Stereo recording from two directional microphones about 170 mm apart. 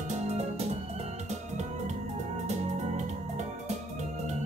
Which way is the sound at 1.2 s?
40° right (ahead or behind).